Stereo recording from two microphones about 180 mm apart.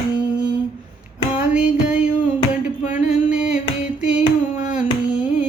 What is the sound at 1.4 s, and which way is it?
Music, 5° right (ahead or behind).